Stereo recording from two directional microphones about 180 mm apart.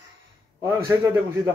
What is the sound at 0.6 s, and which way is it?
Speech, 10° right (ahead or behind).